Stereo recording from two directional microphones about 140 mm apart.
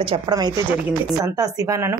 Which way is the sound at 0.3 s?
30° right (ahead or behind).